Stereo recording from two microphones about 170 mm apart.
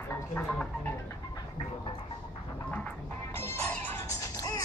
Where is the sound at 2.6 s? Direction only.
10° left (ahead or behind).